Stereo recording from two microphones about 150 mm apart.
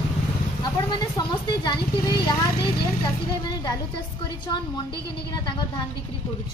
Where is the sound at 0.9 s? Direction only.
30° left (ahead or behind).